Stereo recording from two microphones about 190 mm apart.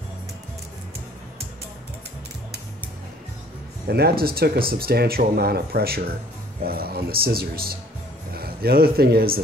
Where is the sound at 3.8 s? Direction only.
55° right (ahead or behind).